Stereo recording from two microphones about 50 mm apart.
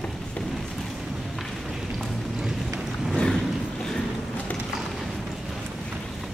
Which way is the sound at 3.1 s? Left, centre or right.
Centre.